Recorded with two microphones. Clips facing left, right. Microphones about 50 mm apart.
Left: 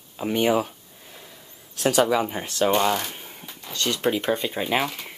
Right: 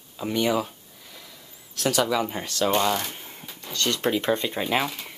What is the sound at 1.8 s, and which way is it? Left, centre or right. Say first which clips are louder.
Speech: left 3 dB; left.